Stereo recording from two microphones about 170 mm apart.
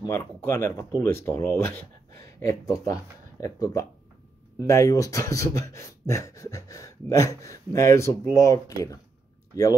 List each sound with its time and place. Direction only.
0.0 s speech: 20° left (ahead or behind)